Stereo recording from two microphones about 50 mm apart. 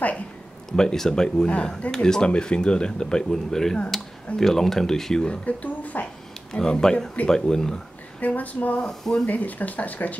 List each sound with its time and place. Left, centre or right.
0.7 s speech: centre
5.4 s speech: left
6.5 s speech: centre
8.2 s speech: left
8.8 s speech: centre
9.2 s speech: left